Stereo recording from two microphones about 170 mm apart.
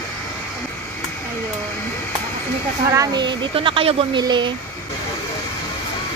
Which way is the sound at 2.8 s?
20° right (ahead or behind).